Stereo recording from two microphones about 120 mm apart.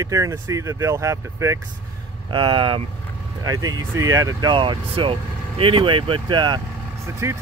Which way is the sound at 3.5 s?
30° right (ahead or behind).